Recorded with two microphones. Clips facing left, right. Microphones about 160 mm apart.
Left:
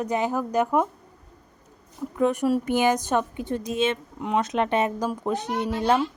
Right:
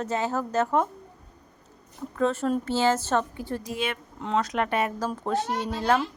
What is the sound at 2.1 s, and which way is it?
Speech, 15° left (ahead or behind).